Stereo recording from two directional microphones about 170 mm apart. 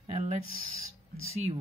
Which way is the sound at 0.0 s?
40° right (ahead or behind).